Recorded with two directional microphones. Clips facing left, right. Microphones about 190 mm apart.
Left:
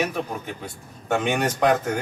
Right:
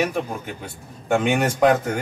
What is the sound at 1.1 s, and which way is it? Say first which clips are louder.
Speech: right 3 dB; 10° right (ahead or behind).